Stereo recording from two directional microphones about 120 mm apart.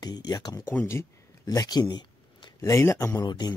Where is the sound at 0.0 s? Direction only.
35° left (ahead or behind).